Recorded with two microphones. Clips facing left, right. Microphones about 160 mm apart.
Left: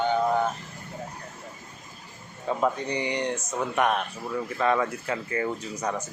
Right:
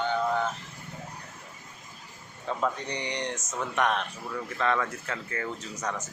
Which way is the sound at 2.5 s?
15° left (ahead or behind).